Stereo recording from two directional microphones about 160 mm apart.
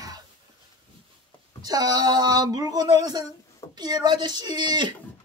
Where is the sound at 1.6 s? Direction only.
25° right (ahead or behind).